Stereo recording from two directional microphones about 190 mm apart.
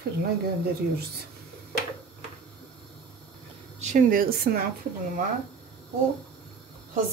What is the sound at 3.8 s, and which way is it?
Speech, 40° right (ahead or behind).